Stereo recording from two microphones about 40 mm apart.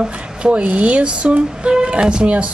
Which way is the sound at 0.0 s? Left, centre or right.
Right.